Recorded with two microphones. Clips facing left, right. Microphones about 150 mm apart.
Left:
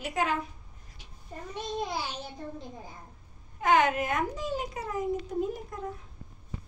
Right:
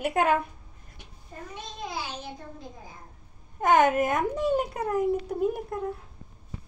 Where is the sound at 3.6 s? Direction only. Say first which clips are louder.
Right 4 dB; 50° right (ahead or behind).